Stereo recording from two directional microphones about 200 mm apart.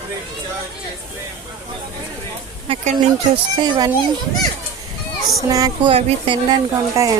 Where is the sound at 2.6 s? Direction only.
30° right (ahead or behind).